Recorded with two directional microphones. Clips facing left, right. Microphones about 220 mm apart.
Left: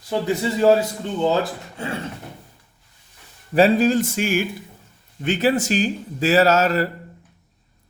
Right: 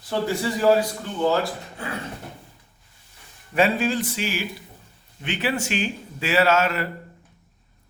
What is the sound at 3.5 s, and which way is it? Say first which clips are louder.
A man's voice: left 6 dB; 35° left (ahead or behind).